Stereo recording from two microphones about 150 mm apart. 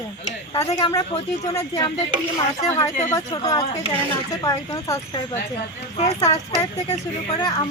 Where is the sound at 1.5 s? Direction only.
20° left (ahead or behind).